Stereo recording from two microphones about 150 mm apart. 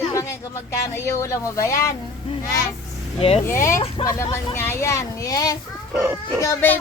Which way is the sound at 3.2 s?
40° left (ahead or behind).